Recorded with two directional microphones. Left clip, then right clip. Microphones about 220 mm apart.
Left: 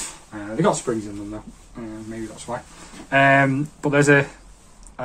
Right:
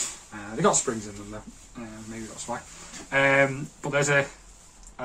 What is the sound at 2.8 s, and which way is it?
Speech, 45° left (ahead or behind).